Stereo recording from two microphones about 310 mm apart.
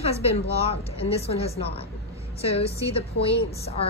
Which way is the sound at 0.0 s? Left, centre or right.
Centre.